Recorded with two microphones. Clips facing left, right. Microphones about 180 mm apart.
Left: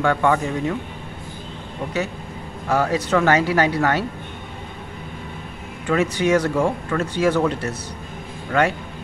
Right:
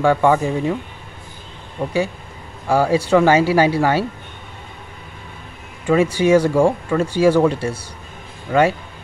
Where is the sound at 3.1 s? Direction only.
10° right (ahead or behind).